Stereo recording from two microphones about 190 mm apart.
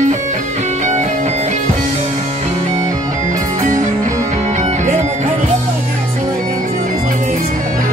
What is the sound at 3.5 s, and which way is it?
Music, 40° right (ahead or behind).